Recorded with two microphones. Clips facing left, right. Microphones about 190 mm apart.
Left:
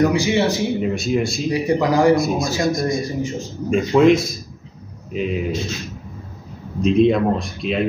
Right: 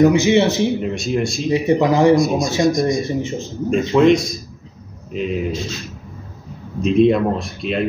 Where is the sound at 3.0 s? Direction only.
25° right (ahead or behind).